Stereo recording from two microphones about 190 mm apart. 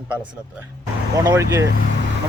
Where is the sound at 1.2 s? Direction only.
20° right (ahead or behind).